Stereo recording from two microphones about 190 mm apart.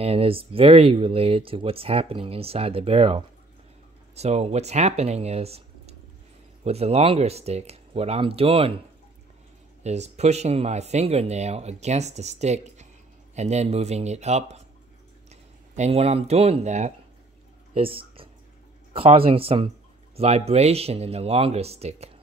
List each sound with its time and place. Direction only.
0.0 s speech: 30° right (ahead or behind)
9.8 s speech: 35° right (ahead or behind)
15.7 s speech: 35° right (ahead or behind)